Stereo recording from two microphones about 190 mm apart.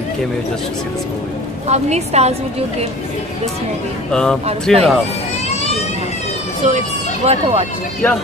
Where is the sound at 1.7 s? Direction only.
35° right (ahead or behind).